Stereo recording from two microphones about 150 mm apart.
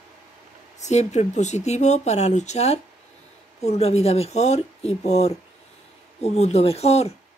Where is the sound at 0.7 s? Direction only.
50° left (ahead or behind).